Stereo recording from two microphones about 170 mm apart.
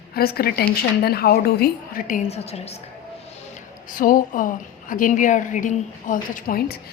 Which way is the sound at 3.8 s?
55° left (ahead or behind).